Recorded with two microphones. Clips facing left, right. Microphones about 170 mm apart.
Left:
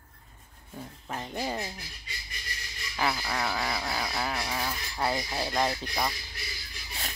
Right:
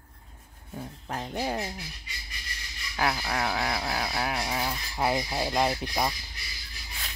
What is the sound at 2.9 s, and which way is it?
Rub, 10° right (ahead or behind).